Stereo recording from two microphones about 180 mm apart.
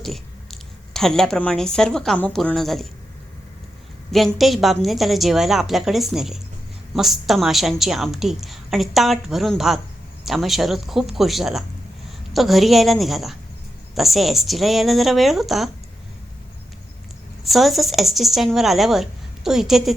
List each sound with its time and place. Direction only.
0.0 s speech: centre (ahead or behind)
4.4 s a woman's voice: centre (ahead or behind)
17.4 s a woman's voice: centre (ahead or behind)